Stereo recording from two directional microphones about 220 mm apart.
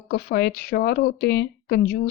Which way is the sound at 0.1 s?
45° left (ahead or behind).